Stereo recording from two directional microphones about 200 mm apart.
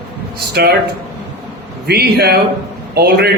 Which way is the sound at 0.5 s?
55° right (ahead or behind).